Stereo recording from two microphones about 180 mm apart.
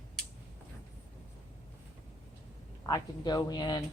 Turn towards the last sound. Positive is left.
turn(degrees=25)  # may be behind; listen again after turning